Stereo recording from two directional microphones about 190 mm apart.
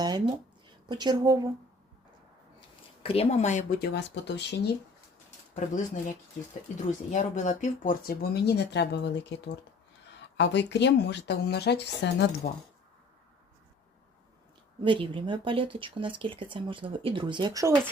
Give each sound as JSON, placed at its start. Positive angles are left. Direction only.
{"t": 0.9, "sound": "speech", "side_deg": -25}
{"t": 3.0, "sound": "speech", "side_deg": 30}
{"t": 5.5, "sound": "speech", "side_deg": 40}
{"t": 14.8, "sound": "speech", "side_deg": -25}